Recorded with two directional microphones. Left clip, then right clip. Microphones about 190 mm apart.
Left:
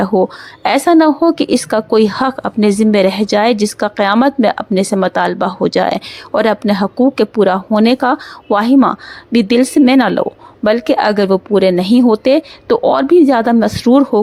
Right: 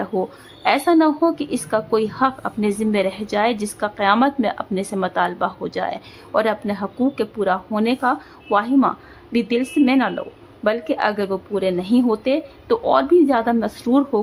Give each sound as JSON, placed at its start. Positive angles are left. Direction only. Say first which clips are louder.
{"t": 0.0, "sound": "a woman's voice", "louder": "left 10 dB", "side_deg": 40}